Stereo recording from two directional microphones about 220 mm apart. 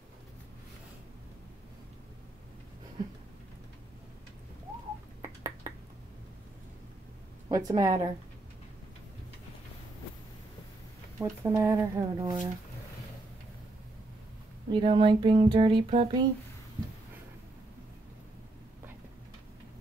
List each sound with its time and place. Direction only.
5.2 s finger snapping: 20° right (ahead or behind)
7.4 s speech: 15° right (ahead or behind)
11.1 s speech: 10° right (ahead or behind)
14.7 s speech: 20° right (ahead or behind)